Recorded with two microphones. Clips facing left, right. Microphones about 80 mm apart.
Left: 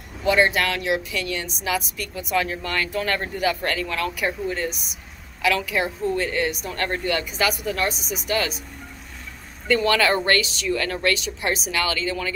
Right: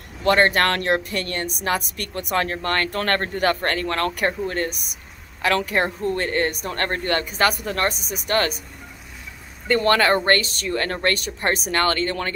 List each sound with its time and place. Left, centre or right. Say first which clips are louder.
0.2 s speech: right 2 dB; right
9.7 s speech: right 2 dB; right